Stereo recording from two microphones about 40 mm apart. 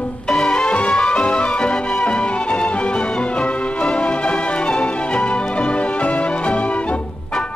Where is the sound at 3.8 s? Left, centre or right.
Centre.